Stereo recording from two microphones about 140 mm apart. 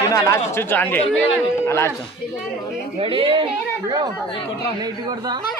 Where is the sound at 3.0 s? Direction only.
40° right (ahead or behind).